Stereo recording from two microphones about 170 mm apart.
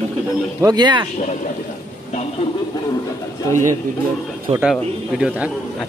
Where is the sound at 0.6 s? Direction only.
25° right (ahead or behind).